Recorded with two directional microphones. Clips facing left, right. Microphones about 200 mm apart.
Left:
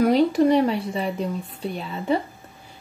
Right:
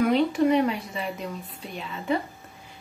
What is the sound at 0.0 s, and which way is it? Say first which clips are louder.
Speech: left 4 dB; 35° left (ahead or behind).